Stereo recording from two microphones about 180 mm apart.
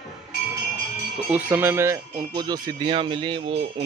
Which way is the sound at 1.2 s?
10° right (ahead or behind).